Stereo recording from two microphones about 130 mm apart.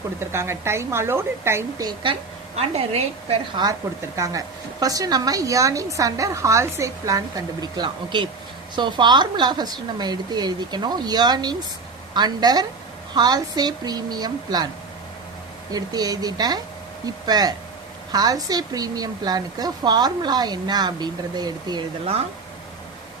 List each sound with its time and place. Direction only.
0.2 s speech: 20° right (ahead or behind)
2.6 s a woman's voice: 50° right (ahead or behind)
3.6 s a woman's voice: 25° right (ahead or behind)
15.7 s a woman's voice: 30° right (ahead or behind)